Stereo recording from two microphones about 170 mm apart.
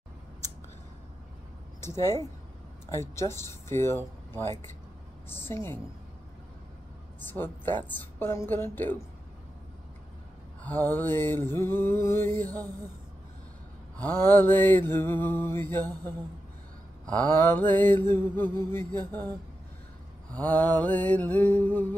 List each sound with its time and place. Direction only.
1.8 s speech: 15° left (ahead or behind)
2.9 s mantra: 15° left (ahead or behind)
7.2 s mantra: 10° left (ahead or behind)
10.6 s mantra: 10° left (ahead or behind)
14.0 s mantra: 10° left (ahead or behind)
20.3 s mantra: 10° left (ahead or behind)